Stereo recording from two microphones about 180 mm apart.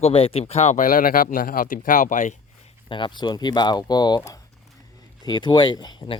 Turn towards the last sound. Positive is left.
turn(degrees=25)  # may be behind; listen again after turning